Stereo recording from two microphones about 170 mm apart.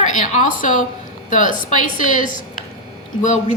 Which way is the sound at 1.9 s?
50° left (ahead or behind).